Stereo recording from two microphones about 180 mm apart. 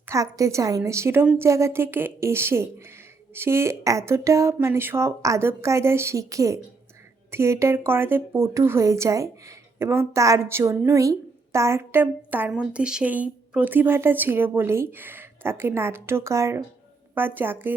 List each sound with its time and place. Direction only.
0.1 s speech: 20° right (ahead or behind)